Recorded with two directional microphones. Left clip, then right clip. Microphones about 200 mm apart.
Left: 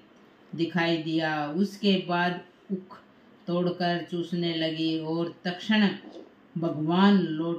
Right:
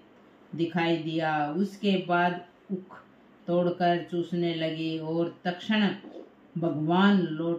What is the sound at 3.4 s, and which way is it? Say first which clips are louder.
Speech: right 3 dB; 5° right (ahead or behind).